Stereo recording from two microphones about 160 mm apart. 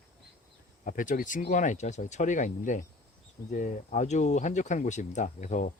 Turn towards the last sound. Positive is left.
turn(degrees=50)  # may be behind; listen again after turning